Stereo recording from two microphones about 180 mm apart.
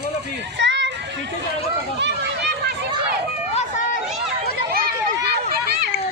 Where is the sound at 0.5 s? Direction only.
85° right.